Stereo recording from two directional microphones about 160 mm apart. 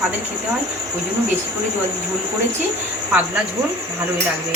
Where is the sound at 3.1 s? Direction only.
10° right (ahead or behind).